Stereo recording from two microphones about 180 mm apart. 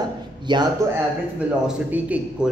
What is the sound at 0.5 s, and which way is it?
Speech, 25° right (ahead or behind).